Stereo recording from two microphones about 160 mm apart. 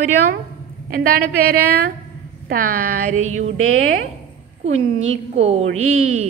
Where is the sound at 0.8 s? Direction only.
65° right (ahead or behind); by 3.5 s 50° right (ahead or behind).